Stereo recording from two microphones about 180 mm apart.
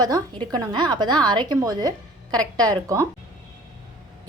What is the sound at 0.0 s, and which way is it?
A woman's voice, 20° right (ahead or behind).